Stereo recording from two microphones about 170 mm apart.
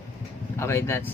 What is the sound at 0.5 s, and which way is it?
Speech, 15° left (ahead or behind).